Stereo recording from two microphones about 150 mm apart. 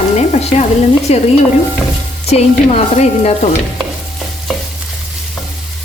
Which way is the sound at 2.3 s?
45° left (ahead or behind).